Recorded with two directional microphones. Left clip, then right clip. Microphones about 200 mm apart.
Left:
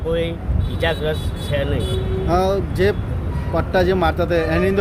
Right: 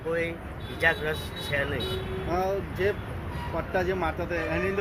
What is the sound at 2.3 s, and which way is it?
Speech, 45° left (ahead or behind).